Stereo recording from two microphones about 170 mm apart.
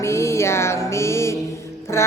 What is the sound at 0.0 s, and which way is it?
Music, 15° left (ahead or behind).